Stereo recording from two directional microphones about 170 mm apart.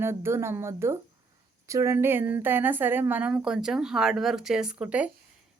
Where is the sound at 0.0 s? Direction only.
15° right (ahead or behind).